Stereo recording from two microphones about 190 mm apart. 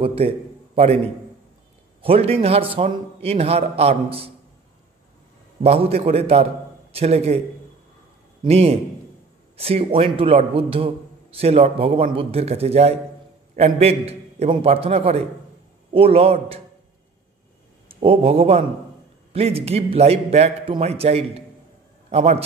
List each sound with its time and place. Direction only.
0.0 s a man's voice: 30° right (ahead or behind)
2.0 s a man's voice: 30° right (ahead or behind)
5.6 s a man's voice: 30° right (ahead or behind)
8.5 s a man's voice: 30° right (ahead or behind)
18.0 s a man's voice: 30° right (ahead or behind)